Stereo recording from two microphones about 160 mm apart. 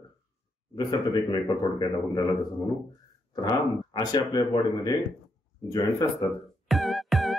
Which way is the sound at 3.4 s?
25° left (ahead or behind).